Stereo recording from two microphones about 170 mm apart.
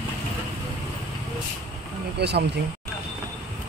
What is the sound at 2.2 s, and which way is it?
Speech, 75° right (ahead or behind).